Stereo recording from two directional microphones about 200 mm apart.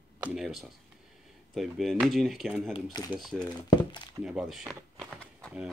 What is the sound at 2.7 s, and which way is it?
Speech, 20° left (ahead or behind).